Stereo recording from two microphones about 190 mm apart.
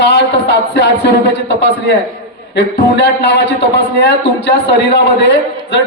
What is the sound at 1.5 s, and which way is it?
A man's voice, 65° left (ahead or behind).